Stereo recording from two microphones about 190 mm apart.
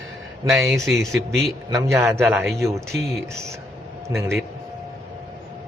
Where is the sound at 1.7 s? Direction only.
15° right (ahead or behind).